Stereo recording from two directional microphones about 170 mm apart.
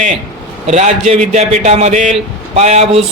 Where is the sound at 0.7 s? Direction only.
40° right (ahead or behind).